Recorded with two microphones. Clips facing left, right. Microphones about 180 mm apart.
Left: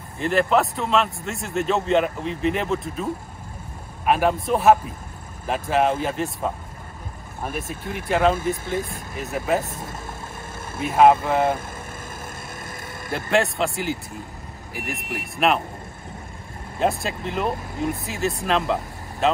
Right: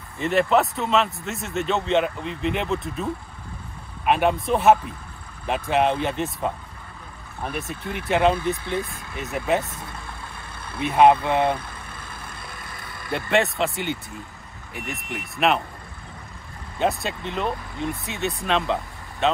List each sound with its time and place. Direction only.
0.2 s a man's voice: centre (ahead or behind)
9.8 s speech: 45° left (ahead or behind)
10.8 s a man's voice: 5° left (ahead or behind)
13.1 s a man's voice: centre (ahead or behind)
16.7 s a man's voice: centre (ahead or behind)